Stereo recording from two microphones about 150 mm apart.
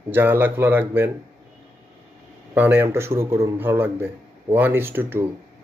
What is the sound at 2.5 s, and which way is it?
Speech, 15° right (ahead or behind).